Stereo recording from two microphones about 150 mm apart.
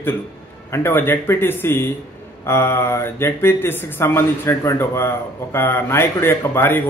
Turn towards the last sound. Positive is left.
turn(degrees=15)  # may be behind; listen again after turning